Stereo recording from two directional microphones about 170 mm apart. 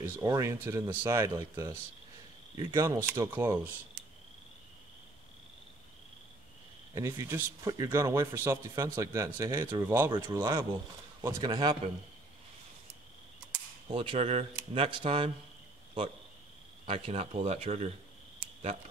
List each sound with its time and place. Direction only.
0.0 s speech: 15° right (ahead or behind)
7.0 s speech: 15° right (ahead or behind)
13.8 s speech: 30° right (ahead or behind)
16.8 s speech: 35° right (ahead or behind)